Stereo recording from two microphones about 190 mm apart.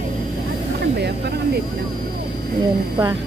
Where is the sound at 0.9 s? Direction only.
60° right (ahead or behind).